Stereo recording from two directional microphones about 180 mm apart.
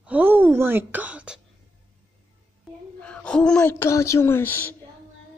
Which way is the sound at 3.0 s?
5° left (ahead or behind).